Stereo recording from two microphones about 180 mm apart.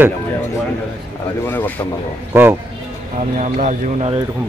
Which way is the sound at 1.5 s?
10° left (ahead or behind).